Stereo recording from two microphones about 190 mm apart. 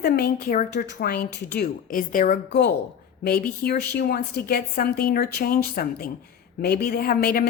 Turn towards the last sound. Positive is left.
turn(degrees=55)  # may be behind; listen again after turning